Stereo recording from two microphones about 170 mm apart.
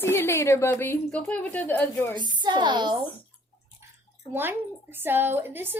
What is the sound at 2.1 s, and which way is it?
Speech, 25° right (ahead or behind).